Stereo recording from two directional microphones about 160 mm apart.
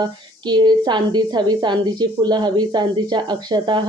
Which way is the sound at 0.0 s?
25° right (ahead or behind).